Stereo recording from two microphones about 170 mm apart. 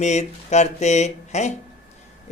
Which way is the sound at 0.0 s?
40° left (ahead or behind).